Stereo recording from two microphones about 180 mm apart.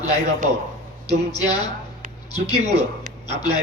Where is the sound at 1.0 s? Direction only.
20° left (ahead or behind).